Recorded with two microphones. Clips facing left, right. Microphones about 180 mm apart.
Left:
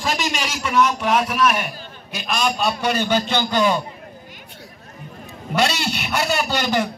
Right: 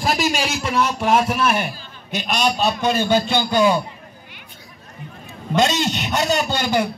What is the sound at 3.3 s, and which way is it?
Speech, 10° right (ahead or behind).